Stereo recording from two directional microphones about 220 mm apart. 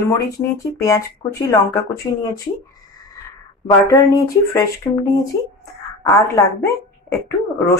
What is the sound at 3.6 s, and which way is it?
Speech, 15° left (ahead or behind).